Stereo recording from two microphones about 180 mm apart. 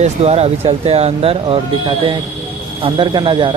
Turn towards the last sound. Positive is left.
turn(degrees=-25)  # may be behind; listen again after turning